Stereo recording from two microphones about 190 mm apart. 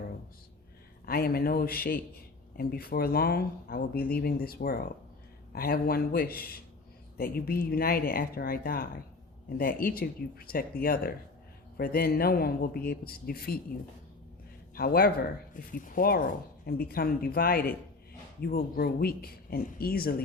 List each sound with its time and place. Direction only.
1.0 s speech: 50° left (ahead or behind)
14.8 s speech: 50° left (ahead or behind)